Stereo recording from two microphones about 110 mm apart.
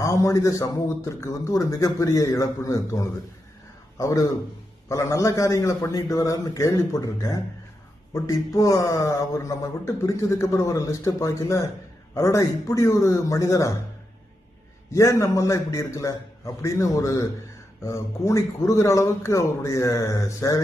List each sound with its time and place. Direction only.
0.0 s a man's voice: 30° left (ahead or behind)
14.9 s speech: 30° left (ahead or behind)